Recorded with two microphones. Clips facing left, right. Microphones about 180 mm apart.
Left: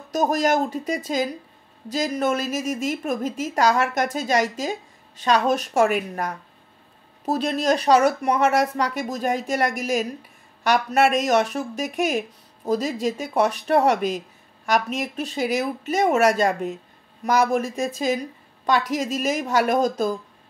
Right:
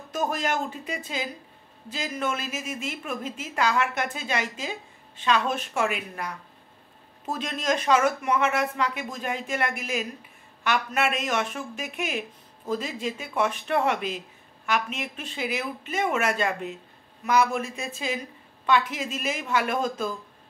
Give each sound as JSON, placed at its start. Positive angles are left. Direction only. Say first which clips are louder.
{"t": 0.1, "sound": "a woman's voice", "louder": "left 7 dB", "side_deg": 40}